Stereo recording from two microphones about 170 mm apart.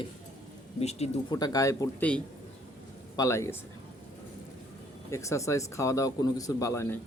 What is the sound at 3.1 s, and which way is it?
Speech, 20° left (ahead or behind).